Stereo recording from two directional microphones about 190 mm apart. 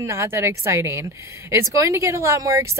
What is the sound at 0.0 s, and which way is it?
Speech, 15° right (ahead or behind).